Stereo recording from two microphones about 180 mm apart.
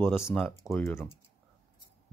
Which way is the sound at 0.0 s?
10° left (ahead or behind).